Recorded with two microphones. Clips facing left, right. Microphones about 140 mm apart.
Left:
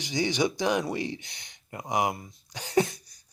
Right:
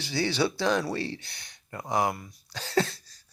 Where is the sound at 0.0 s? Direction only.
15° left (ahead or behind).